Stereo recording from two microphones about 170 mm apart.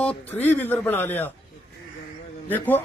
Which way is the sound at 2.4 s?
10° left (ahead or behind).